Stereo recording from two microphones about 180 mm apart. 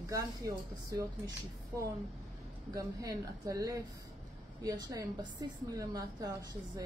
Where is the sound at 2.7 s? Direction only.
20° right (ahead or behind).